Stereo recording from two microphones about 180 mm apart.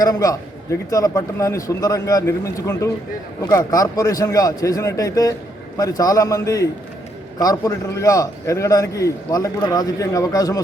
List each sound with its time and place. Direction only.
0.0 s a man's voice: 20° left (ahead or behind)